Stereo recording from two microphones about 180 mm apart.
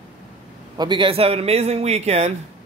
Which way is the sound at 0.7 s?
25° right (ahead or behind).